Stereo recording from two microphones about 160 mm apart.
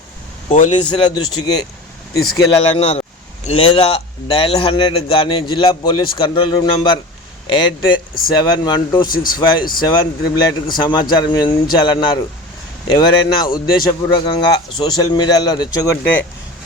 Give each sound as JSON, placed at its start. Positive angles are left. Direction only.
{"t": 0.4, "sound": "speech", "side_deg": 45}
{"t": 0.9, "sound": "speech", "side_deg": 30}
{"t": 2.6, "sound": "a man's voice", "side_deg": 40}
{"t": 9.1, "sound": "speech", "side_deg": 65}
{"t": 9.4, "sound": "speech", "side_deg": 30}